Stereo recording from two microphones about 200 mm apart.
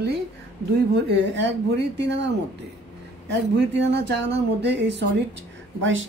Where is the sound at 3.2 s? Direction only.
60° right (ahead or behind).